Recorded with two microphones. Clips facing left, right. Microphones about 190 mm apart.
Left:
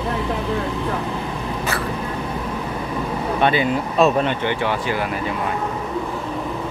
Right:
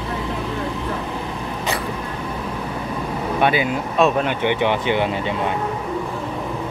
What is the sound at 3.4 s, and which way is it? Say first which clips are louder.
Speech: even; 5° right (ahead or behind).